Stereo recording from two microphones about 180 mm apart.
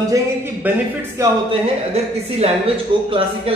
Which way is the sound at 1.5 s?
35° right (ahead or behind).